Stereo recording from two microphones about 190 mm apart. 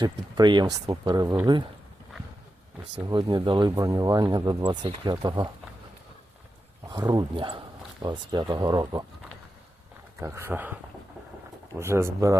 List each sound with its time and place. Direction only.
0.0 s speech: 20° right (ahead or behind)
3.1 s speech: 25° right (ahead or behind)
6.8 s speech: 20° right (ahead or behind)
10.2 s speech: 15° right (ahead or behind)
11.8 s speech: 15° right (ahead or behind)